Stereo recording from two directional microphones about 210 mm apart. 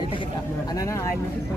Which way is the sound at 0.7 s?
15° left (ahead or behind).